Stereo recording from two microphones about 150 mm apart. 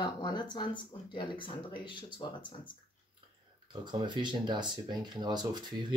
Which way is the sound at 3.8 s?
30° right (ahead or behind).